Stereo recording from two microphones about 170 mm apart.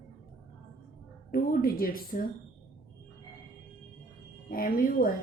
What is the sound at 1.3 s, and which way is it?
Speech, 60° left (ahead or behind).